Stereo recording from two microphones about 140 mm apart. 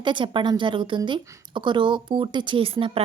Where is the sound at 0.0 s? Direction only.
35° right (ahead or behind).